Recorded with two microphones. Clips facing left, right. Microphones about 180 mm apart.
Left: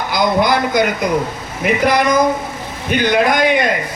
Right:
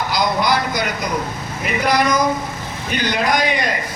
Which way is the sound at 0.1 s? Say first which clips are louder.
Left 5 dB; 50° left (ahead or behind).